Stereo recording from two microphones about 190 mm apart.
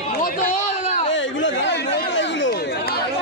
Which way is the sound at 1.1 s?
80° left.